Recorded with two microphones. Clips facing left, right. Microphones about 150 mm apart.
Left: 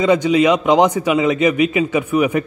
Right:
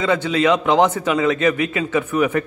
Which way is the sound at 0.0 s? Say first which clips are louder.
Left 4 dB; 15° left (ahead or behind).